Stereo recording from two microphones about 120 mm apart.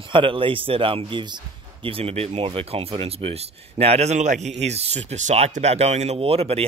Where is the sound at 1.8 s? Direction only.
55° right (ahead or behind).